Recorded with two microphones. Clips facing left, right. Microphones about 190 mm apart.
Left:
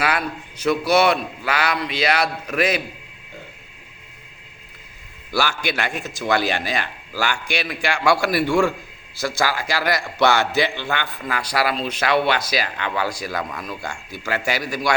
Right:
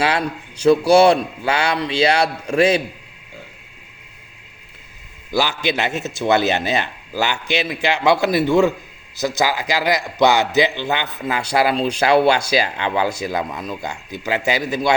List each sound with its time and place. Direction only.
0.0 s a man's voice: 30° right (ahead or behind)
5.3 s a man's voice: 20° right (ahead or behind)